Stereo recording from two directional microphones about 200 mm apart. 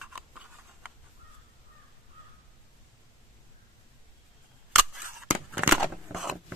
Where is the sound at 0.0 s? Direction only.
5° right (ahead or behind).